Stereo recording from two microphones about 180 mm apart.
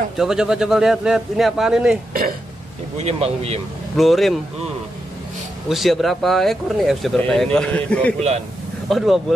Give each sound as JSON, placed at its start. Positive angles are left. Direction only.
{"t": 0.2, "sound": "speech", "side_deg": -5}
{"t": 3.0, "sound": "speech", "side_deg": -35}
{"t": 3.9, "sound": "speech", "side_deg": 0}
{"t": 5.7, "sound": "speech", "side_deg": 0}